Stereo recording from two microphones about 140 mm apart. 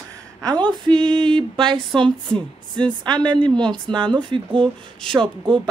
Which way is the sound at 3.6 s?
5° left (ahead or behind).